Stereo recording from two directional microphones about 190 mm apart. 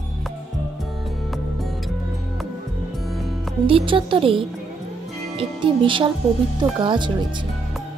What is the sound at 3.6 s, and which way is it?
Speech, 25° right (ahead or behind).